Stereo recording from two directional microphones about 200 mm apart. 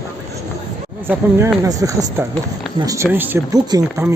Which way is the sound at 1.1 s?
15° right (ahead or behind).